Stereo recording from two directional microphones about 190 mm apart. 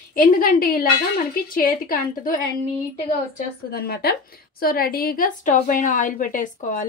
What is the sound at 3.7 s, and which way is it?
A woman's voice, 55° left (ahead or behind).